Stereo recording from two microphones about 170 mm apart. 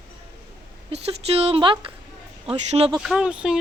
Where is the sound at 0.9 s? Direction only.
35° right (ahead or behind).